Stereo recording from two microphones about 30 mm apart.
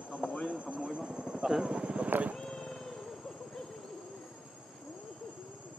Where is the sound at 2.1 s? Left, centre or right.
Right.